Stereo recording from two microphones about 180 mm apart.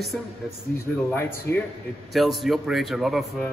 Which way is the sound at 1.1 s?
15° left (ahead or behind).